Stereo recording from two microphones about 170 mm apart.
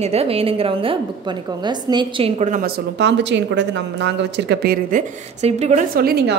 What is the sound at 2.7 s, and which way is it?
Speech, 90° right.